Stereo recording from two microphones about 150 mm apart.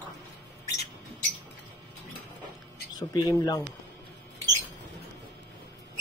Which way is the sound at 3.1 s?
25° left (ahead or behind).